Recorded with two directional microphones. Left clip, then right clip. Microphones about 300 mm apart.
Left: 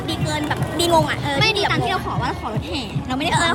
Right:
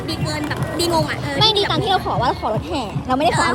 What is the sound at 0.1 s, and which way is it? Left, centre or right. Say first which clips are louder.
Music: left 1 dB; centre.